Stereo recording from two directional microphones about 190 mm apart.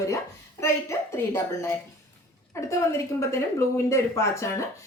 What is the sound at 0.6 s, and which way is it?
Speech, 15° left (ahead or behind).